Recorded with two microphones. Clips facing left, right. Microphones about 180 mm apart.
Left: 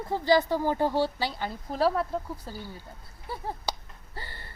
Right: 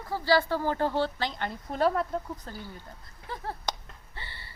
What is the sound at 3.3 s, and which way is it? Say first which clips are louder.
Finger snapping: left 1 dB; 10° left (ahead or behind).